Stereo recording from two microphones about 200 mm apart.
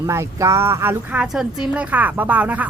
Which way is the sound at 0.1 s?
15° right (ahead or behind).